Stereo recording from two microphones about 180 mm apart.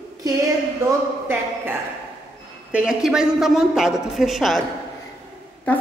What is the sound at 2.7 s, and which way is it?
Speech, 5° right (ahead or behind).